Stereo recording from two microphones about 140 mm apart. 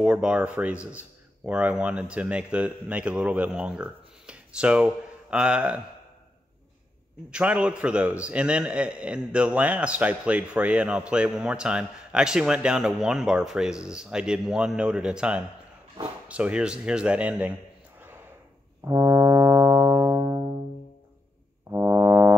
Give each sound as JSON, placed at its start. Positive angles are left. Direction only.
{"t": 0.0, "sound": "a man's voice", "side_deg": -10}
{"t": 7.2, "sound": "a man's voice", "side_deg": -10}
{"t": 18.9, "sound": "brass instrument", "side_deg": -25}
{"t": 21.6, "sound": "music", "side_deg": -20}